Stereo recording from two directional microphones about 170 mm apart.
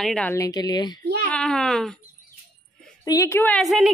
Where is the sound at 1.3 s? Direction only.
5° left (ahead or behind).